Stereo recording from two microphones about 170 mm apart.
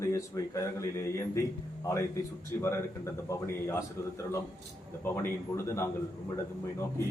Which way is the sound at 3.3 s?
15° left (ahead or behind).